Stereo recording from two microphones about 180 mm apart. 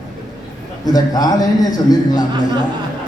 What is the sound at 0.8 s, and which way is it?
A man's voice, 20° left (ahead or behind).